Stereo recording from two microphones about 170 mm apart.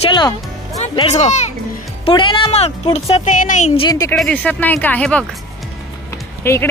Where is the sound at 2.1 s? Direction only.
30° left (ahead or behind).